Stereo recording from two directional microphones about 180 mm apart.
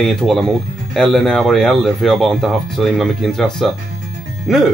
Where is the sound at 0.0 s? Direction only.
Centre (ahead or behind).